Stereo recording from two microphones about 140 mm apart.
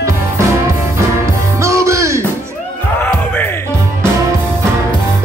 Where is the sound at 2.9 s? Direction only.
15° left (ahead or behind).